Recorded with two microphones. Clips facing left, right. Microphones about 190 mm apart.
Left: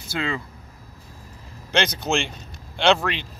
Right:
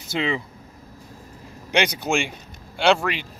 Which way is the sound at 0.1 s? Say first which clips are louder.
Right 3 dB; 20° right (ahead or behind).